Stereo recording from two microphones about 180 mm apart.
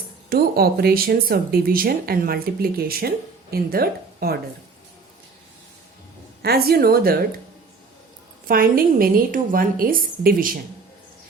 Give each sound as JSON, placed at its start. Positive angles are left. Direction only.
{"t": 0.3, "sound": "speech", "side_deg": -55}
{"t": 6.4, "sound": "speech", "side_deg": -60}
{"t": 8.4, "sound": "a woman's voice", "side_deg": -55}